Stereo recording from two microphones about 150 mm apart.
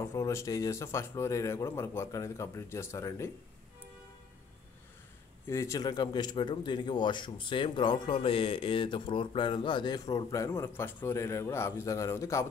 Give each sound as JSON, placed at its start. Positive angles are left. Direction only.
{"t": 0.0, "sound": "speech", "side_deg": 20}
{"t": 5.5, "sound": "speech", "side_deg": 20}